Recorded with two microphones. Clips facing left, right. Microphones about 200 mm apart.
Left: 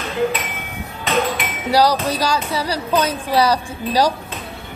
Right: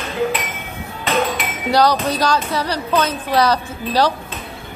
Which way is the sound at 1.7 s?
10° left (ahead or behind).